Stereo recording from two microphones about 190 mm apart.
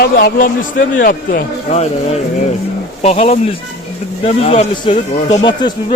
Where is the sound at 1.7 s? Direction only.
35° left (ahead or behind).